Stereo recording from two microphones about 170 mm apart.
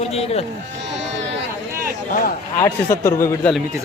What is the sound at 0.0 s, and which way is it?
Speech, 35° left (ahead or behind).